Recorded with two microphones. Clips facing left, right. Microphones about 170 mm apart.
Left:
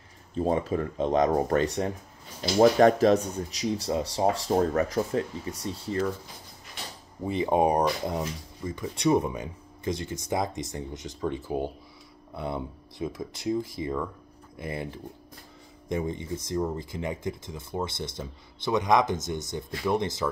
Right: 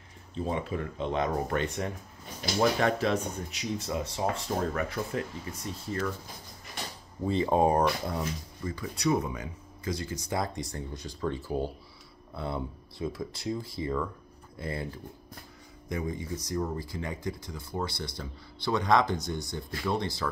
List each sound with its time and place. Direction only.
0.3 s speech: 45° left (ahead or behind)
7.2 s speech: 15° left (ahead or behind)